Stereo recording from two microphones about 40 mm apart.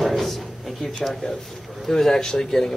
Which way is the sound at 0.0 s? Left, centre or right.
Centre.